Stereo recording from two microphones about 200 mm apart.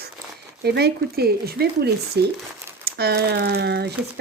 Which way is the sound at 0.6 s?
55° right (ahead or behind).